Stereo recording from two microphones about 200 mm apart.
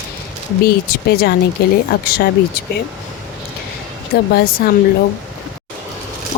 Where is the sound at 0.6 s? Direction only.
50° left (ahead or behind).